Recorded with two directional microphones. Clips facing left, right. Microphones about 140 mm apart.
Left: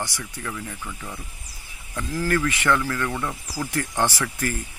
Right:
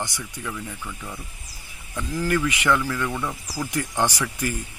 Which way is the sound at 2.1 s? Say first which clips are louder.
Even; 15° right (ahead or behind).